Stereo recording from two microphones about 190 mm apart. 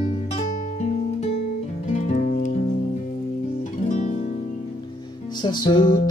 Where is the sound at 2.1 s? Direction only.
45° left (ahead or behind).